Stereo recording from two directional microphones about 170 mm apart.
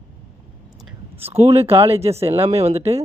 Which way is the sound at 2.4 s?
35° right (ahead or behind).